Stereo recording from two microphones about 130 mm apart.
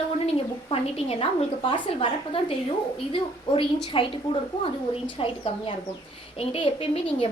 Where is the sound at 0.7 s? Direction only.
50° left (ahead or behind).